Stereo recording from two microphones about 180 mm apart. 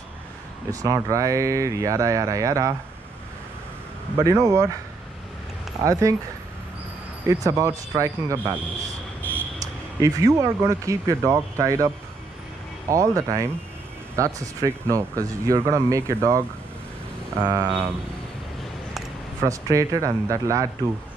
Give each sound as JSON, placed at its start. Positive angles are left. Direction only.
{"t": 0.7, "sound": "speech", "side_deg": -20}
{"t": 4.2, "sound": "speech", "side_deg": -20}
{"t": 5.8, "sound": "speech", "side_deg": -20}
{"t": 7.2, "sound": "speech", "side_deg": -20}
{"t": 9.9, "sound": "speech", "side_deg": -20}
{"t": 19.4, "sound": "speech", "side_deg": -20}